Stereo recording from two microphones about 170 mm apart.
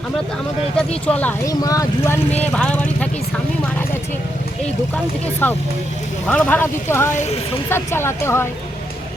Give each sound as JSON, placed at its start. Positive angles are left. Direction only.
{"t": 1.0, "sound": "speech", "side_deg": 10}
{"t": 1.5, "sound": "speech", "side_deg": 20}
{"t": 2.3, "sound": "speech", "side_deg": 5}
{"t": 5.4, "sound": "speech", "side_deg": 10}
{"t": 7.1, "sound": "speech", "side_deg": 45}
{"t": 7.7, "sound": "speech", "side_deg": 15}